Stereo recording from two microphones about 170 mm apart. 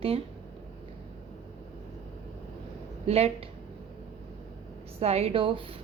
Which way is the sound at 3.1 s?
35° right (ahead or behind).